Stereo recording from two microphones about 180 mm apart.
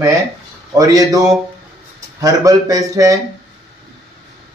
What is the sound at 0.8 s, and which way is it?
Speech, 20° right (ahead or behind).